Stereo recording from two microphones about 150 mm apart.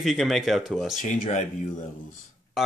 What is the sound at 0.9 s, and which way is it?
Speech, 60° left (ahead or behind).